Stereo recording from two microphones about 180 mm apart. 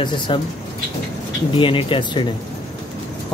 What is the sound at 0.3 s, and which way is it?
Speech, 25° left (ahead or behind).